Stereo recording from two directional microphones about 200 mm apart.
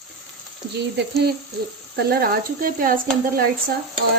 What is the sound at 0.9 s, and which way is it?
Speech, 55° right (ahead or behind).